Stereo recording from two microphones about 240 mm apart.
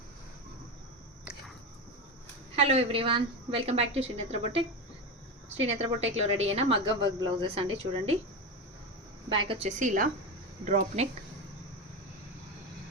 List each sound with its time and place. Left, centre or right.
2.6 s a woman's voice: right
5.6 s a woman's voice: right
9.5 s a woman's voice: right